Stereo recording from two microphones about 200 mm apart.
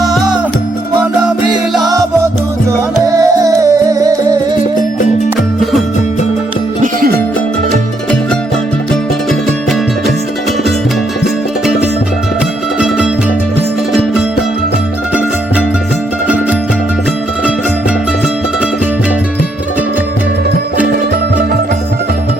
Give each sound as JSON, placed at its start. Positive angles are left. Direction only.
{"t": 0.0, "sound": "music", "side_deg": 0}
{"t": 3.2, "sound": "music", "side_deg": -15}